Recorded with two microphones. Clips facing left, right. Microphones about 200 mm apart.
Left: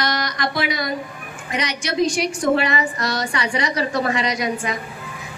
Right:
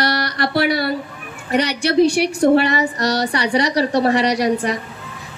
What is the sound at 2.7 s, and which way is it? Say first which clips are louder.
A woman's voice: right 4 dB; 35° right (ahead or behind).